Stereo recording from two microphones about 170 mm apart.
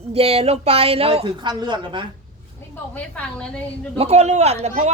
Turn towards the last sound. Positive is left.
turn(degrees=-40)  # may be behind; listen again after turning